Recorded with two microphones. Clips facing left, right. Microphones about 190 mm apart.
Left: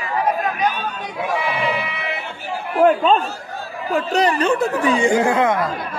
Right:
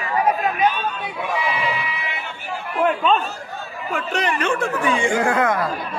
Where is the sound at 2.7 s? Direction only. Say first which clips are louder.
Left 4 dB; 35° left (ahead or behind).